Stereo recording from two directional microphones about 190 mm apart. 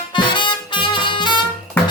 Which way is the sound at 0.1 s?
25° left (ahead or behind).